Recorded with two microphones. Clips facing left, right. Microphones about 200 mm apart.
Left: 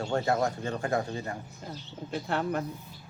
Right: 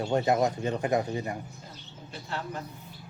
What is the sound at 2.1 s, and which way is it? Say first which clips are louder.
Speech: left 7 dB; 60° left (ahead or behind).